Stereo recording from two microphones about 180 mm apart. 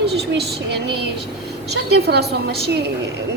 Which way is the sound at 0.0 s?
65° right (ahead or behind).